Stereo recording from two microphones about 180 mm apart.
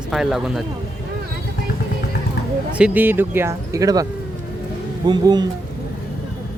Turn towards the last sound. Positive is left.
turn(degrees=-25)  # may be behind; listen again after turning